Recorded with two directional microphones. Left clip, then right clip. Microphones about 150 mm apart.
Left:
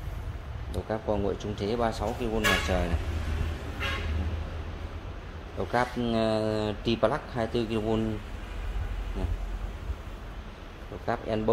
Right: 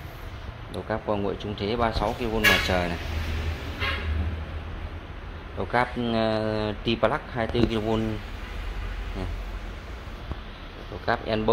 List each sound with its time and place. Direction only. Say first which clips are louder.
0.8 s speech: right 2 dB; 15° left (ahead or behind)
1.8 s speech: right 5 dB; 15° left (ahead or behind)
5.6 s speech: right 3 dB; 25° left (ahead or behind)
7.7 s speech: right 2 dB; 15° left (ahead or behind)
11.1 s speech: right 4 dB; 15° left (ahead or behind)